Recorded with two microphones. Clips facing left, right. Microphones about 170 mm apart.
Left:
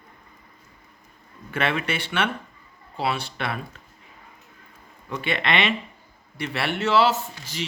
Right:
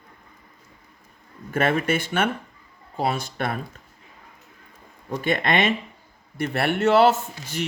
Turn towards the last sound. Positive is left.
turn(degrees=-55)  # may be behind; listen again after turning